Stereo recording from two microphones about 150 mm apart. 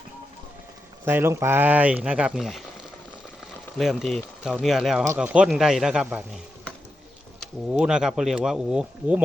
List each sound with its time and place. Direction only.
1.0 s speech: 15° right (ahead or behind)
3.8 s speech: centre (ahead or behind)